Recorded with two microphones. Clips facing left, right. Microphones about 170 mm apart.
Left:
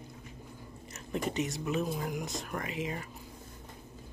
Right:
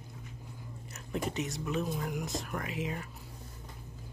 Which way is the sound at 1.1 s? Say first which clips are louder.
Left 2 dB; centre (ahead or behind).